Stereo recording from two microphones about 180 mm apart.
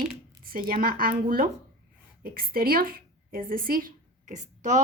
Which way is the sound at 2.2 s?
55° right (ahead or behind).